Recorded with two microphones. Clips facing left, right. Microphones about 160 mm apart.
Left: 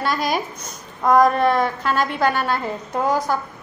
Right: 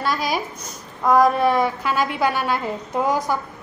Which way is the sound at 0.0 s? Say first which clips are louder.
Left 1 dB; centre (ahead or behind).